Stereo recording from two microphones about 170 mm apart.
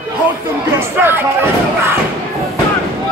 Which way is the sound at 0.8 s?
10° right (ahead or behind).